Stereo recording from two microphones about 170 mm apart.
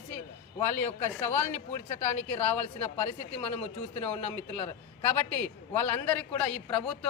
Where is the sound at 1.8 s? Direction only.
40° left (ahead or behind).